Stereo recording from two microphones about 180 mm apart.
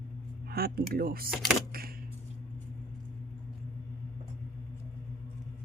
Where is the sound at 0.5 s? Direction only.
55° right (ahead or behind).